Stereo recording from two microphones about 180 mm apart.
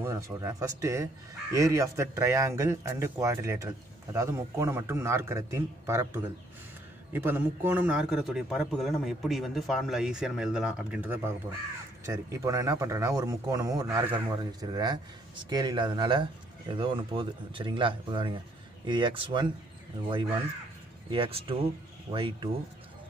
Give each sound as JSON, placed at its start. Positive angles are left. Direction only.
{"t": 0.0, "sound": "a man's voice", "side_deg": -15}